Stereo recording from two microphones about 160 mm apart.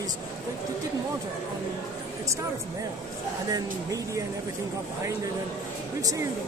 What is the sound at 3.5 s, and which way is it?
Speech, 20° right (ahead or behind).